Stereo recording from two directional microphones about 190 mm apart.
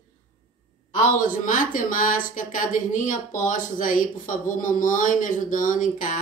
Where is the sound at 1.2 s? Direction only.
45° left (ahead or behind).